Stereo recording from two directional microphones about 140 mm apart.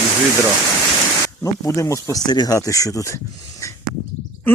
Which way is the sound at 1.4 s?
20° left (ahead or behind).